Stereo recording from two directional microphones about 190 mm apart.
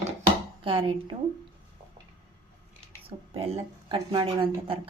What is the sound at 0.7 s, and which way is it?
Speech, 25° right (ahead or behind).